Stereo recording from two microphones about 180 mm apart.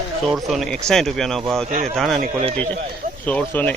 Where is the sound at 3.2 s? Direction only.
10° left (ahead or behind).